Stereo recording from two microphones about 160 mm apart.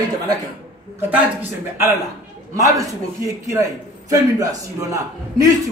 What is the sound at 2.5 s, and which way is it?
Speech, 20° right (ahead or behind).